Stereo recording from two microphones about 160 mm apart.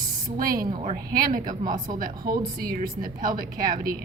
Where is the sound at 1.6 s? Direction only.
25° right (ahead or behind).